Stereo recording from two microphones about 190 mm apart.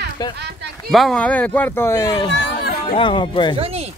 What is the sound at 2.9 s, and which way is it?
Speech, 25° left (ahead or behind).